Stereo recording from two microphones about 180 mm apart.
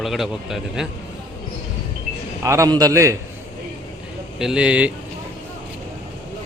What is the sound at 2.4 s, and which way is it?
Speech, 15° right (ahead or behind).